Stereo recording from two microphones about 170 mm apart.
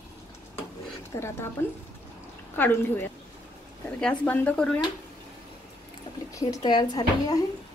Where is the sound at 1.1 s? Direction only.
20° left (ahead or behind).